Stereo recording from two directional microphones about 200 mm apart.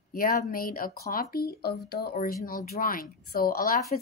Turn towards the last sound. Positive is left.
turn(degrees=45)  # may be behind; listen again after turning